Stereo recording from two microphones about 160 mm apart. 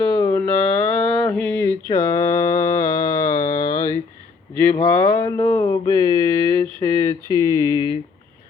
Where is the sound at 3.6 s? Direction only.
20° left (ahead or behind).